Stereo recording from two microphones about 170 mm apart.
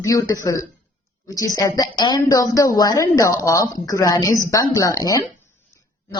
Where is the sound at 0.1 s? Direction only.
20° left (ahead or behind).